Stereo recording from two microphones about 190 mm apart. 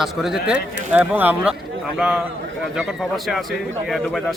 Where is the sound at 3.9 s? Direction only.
Centre (ahead or behind).